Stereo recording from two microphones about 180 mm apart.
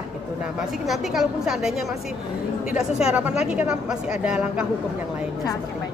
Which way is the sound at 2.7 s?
5° right (ahead or behind).